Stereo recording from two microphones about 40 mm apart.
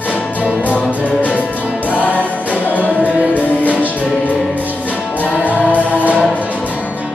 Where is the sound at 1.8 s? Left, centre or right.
Left.